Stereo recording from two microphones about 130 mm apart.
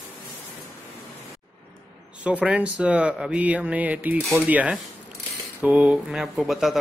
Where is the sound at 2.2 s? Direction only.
10° right (ahead or behind).